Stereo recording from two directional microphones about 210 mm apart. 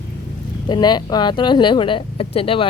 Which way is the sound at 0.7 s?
20° left (ahead or behind).